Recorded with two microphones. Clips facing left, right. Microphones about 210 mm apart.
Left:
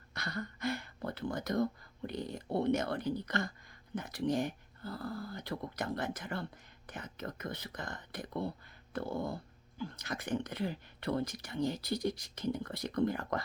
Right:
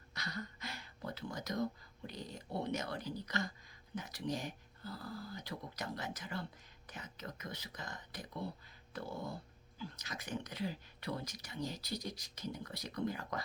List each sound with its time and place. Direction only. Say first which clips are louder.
0.1 s speech: left 5 dB; 55° left (ahead or behind)